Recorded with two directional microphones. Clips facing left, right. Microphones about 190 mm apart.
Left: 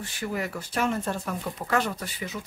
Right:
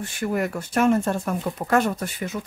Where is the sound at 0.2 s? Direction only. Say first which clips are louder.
Right 6 dB; 50° right (ahead or behind).